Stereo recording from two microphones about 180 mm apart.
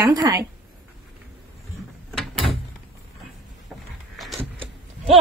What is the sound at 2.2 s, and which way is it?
Drawer open or close, centre (ahead or behind).